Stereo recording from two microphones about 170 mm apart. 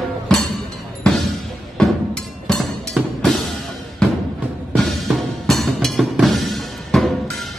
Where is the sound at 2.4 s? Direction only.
Centre (ahead or behind).